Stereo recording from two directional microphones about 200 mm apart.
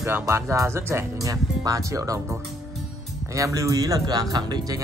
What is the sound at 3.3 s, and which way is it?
Speech, 15° right (ahead or behind).